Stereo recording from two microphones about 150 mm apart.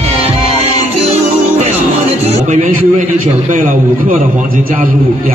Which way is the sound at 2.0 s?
45° right (ahead or behind).